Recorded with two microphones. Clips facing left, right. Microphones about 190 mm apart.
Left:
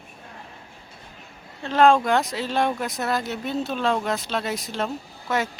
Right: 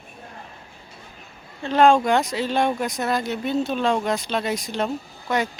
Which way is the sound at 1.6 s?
Centre (ahead or behind).